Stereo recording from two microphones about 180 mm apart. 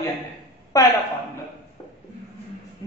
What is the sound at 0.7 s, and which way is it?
Speech, 20° left (ahead or behind).